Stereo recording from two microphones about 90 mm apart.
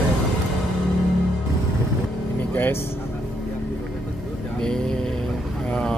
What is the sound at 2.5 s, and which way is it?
Vehicle, 25° left (ahead or behind).